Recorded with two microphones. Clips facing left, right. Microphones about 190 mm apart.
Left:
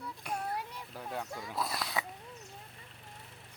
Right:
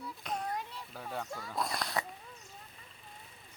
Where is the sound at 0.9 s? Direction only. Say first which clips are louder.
Even; centre (ahead or behind).